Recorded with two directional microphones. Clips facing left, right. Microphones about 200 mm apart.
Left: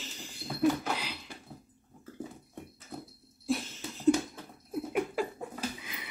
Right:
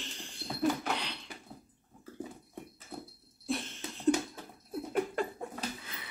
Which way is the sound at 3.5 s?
Centre (ahead or behind).